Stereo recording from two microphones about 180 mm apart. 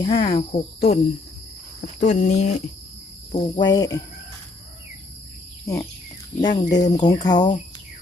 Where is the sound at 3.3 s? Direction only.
30° left (ahead or behind).